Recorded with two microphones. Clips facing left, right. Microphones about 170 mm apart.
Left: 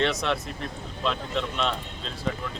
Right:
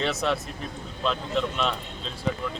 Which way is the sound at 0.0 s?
Centre (ahead or behind).